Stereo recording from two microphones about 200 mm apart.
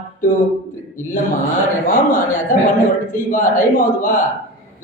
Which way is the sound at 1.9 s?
40° left (ahead or behind).